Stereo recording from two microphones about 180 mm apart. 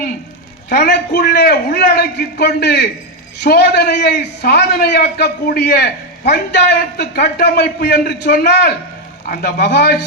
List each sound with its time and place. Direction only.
0.7 s a man's voice: 70° left (ahead or behind)